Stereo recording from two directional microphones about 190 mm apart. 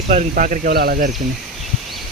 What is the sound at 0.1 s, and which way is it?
Speech, 40° right (ahead or behind).